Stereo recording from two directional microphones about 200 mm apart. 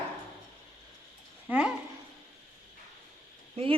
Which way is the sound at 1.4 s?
5° right (ahead or behind).